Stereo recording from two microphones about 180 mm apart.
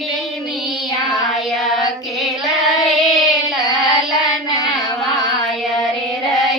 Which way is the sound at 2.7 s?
Centre (ahead or behind).